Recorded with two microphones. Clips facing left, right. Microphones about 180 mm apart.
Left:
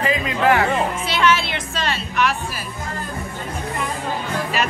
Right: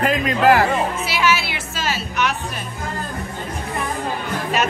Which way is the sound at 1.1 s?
5° right (ahead or behind).